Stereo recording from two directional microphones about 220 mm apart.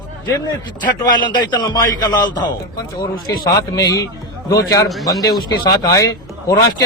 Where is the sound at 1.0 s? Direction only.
20° left (ahead or behind).